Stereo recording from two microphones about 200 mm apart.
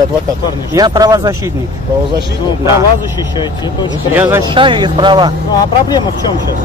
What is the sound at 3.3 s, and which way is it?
Speech, 20° left (ahead or behind).